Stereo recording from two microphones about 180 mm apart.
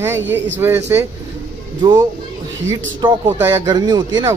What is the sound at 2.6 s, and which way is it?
Speech, 15° right (ahead or behind).